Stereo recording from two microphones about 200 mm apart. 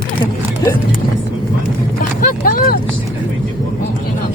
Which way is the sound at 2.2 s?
45° left (ahead or behind).